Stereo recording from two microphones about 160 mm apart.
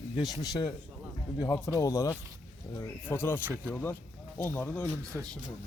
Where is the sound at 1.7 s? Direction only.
20° left (ahead or behind).